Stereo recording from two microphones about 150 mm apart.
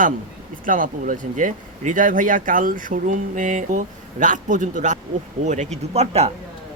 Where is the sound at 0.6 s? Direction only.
65° right (ahead or behind).